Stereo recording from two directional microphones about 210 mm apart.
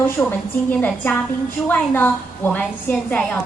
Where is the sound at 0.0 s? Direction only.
10° left (ahead or behind).